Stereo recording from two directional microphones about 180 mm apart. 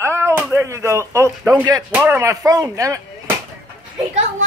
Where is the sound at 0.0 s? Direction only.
15° right (ahead or behind).